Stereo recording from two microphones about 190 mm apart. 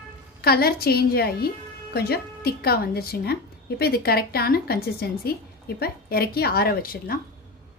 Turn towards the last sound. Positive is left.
turn(degrees=50)  # may be behind; listen again after turning